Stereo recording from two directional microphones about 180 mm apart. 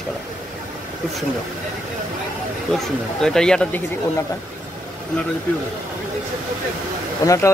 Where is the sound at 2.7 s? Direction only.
5° left (ahead or behind).